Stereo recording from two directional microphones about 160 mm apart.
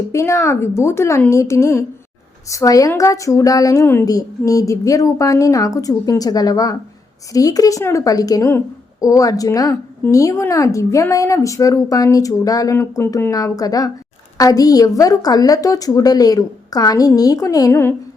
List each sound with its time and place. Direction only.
0.1 s a woman's voice: 20° left (ahead or behind)